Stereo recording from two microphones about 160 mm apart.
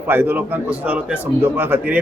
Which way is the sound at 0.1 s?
15° right (ahead or behind).